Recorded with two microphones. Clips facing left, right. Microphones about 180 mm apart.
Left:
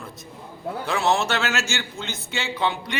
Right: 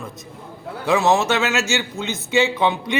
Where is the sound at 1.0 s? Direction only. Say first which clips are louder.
Right 1 dB; 20° right (ahead or behind).